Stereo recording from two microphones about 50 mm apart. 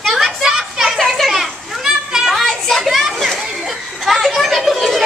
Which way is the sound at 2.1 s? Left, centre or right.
Centre.